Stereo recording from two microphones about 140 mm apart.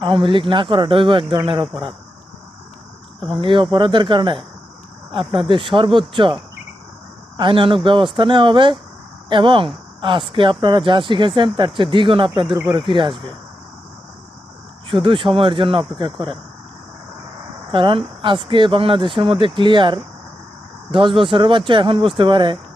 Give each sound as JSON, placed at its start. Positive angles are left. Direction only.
{"t": 0.0, "sound": "speech", "side_deg": -35}
{"t": 3.2, "sound": "speech", "side_deg": 5}
{"t": 3.4, "sound": "speech", "side_deg": -35}
{"t": 7.3, "sound": "speech", "side_deg": -35}
{"t": 14.8, "sound": "speech", "side_deg": -35}
{"t": 17.7, "sound": "speech", "side_deg": -35}